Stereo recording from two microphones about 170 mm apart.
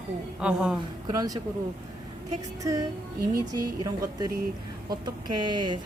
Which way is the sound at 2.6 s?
20° right (ahead or behind).